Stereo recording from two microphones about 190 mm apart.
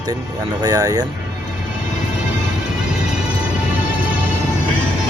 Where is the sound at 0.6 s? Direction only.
20° right (ahead or behind).